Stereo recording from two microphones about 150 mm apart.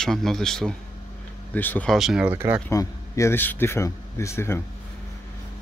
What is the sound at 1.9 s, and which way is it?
Speech, centre (ahead or behind).